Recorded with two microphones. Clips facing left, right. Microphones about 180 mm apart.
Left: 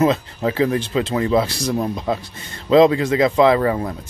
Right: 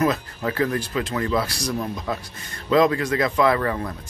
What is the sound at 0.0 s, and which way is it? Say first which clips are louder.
Speech: left 5 dB; 25° left (ahead or behind).